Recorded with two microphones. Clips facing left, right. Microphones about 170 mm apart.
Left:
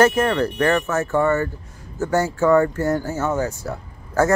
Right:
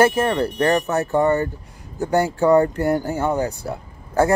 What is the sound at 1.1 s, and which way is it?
Speech, 15° right (ahead or behind).